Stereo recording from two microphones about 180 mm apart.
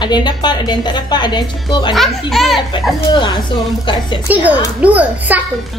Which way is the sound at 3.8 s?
25° left (ahead or behind).